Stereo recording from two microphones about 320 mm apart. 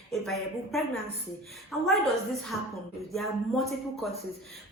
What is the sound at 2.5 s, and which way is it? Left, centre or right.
Speech, centre.